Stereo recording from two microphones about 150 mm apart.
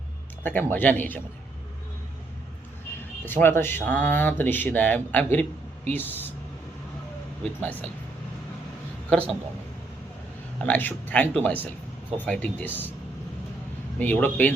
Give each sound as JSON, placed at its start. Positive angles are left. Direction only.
{"t": 0.4, "sound": "speech", "side_deg": 10}
{"t": 3.2, "sound": "speech", "side_deg": 15}
{"t": 7.6, "sound": "speech", "side_deg": 10}
{"t": 10.6, "sound": "speech", "side_deg": 10}
{"t": 14.0, "sound": "speech", "side_deg": 10}